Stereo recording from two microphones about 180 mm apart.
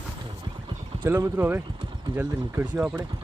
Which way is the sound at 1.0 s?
10° right (ahead or behind).